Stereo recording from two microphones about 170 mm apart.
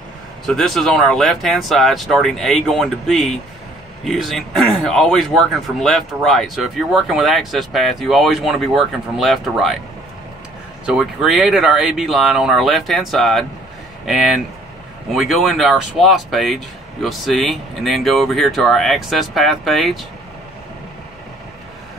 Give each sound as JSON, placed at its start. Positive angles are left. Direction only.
{"t": 0.5, "sound": "speech", "side_deg": 0}
{"t": 10.9, "sound": "speech", "side_deg": 0}